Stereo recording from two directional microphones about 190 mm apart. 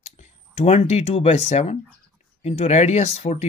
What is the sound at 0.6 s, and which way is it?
Speech, 35° left (ahead or behind).